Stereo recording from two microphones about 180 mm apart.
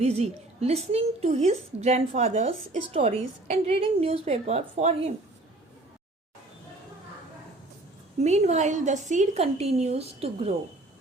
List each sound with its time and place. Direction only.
0.0 s a woman's voice: 35° right (ahead or behind)
8.2 s a woman's voice: 40° right (ahead or behind)